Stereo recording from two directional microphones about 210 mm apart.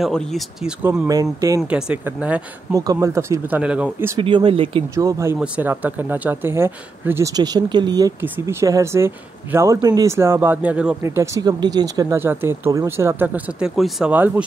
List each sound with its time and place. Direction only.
0.0 s speech: centre (ahead or behind)
1.0 s speech: 15° right (ahead or behind)
1.6 s speech: 5° right (ahead or behind)
4.2 s speech: 25° right (ahead or behind)
4.9 s speech: 15° right (ahead or behind)